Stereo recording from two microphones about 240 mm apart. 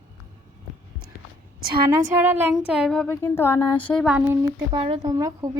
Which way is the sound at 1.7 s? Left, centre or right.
Centre.